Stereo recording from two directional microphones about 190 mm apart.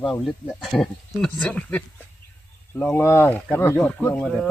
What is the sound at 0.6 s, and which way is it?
Speech, centre (ahead or behind).